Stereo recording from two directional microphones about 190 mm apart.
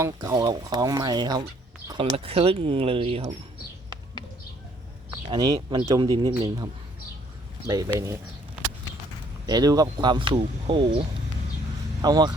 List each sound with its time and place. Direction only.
0.0 s speech: 15° right (ahead or behind)
5.1 s speech: 20° right (ahead or behind)
7.7 s speech: 20° right (ahead or behind)
9.5 s speech: 20° right (ahead or behind)
12.0 s speech: 20° right (ahead or behind)